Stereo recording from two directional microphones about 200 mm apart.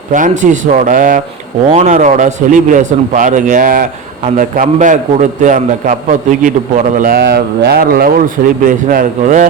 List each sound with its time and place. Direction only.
0.1 s speech: 40° right (ahead or behind)